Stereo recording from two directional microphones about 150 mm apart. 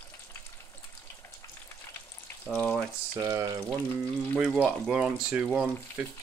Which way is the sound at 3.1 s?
20° right (ahead or behind).